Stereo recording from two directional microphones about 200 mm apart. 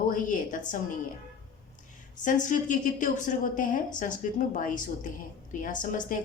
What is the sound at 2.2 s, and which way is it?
Speech, 40° left (ahead or behind).